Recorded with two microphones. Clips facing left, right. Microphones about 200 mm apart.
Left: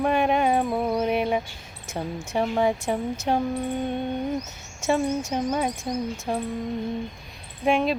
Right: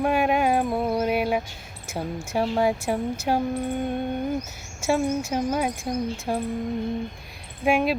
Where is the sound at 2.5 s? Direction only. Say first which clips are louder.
Even; 5° right (ahead or behind).